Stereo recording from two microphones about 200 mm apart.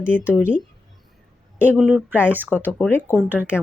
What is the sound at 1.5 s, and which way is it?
Speech, 10° right (ahead or behind).